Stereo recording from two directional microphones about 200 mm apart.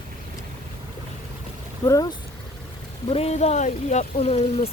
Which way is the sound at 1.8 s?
15° left (ahead or behind).